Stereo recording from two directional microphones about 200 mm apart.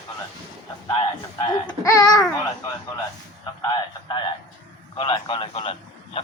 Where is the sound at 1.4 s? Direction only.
20° left (ahead or behind).